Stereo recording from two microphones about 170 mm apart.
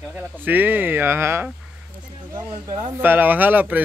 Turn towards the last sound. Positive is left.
turn(degrees=-10)  # may be behind; listen again after turning